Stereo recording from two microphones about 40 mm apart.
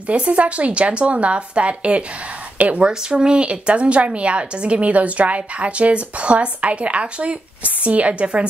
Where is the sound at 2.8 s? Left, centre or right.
Right.